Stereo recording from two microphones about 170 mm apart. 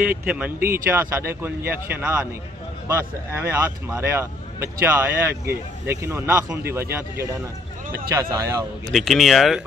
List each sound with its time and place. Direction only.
0.0 s a man's voice: 10° right (ahead or behind)
8.9 s speech: centre (ahead or behind)